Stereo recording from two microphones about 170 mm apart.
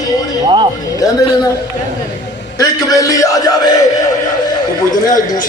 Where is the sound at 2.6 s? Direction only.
20° left (ahead or behind).